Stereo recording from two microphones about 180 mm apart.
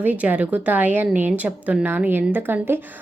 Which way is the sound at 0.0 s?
10° right (ahead or behind).